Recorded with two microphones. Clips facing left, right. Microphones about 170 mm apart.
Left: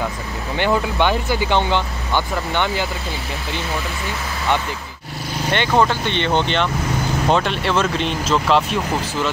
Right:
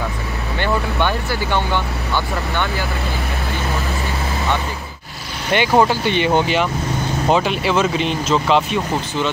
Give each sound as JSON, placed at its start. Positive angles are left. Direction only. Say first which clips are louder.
{"t": 0.6, "sound": "speech", "louder": "left 2 dB", "side_deg": 15}
{"t": 5.5, "sound": "speech", "louder": "right 3 dB", "side_deg": -10}